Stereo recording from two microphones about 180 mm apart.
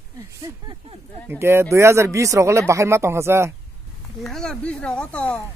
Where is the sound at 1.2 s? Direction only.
15° right (ahead or behind).